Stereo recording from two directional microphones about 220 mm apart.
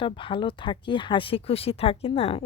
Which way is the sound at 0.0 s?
20° left (ahead or behind).